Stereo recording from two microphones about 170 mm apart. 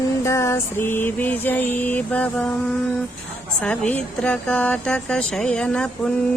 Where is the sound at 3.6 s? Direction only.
10° left (ahead or behind).